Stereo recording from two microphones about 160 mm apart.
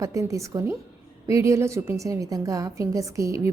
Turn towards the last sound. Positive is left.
turn(degrees=-20)  # may be behind; listen again after turning